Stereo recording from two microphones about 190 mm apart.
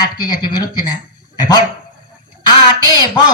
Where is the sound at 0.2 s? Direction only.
20° left (ahead or behind).